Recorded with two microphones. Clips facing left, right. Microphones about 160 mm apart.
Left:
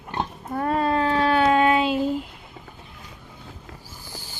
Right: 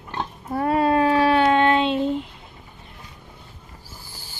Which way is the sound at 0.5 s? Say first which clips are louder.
Right 3 dB; 5° right (ahead or behind).